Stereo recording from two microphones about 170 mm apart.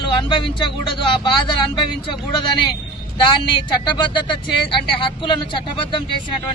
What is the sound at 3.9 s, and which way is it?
Speech, 25° left (ahead or behind).